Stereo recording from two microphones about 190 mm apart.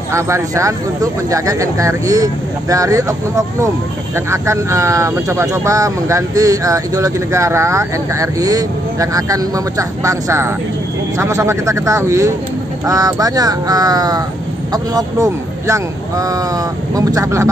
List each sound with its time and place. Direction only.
0.1 s speech: 15° right (ahead or behind)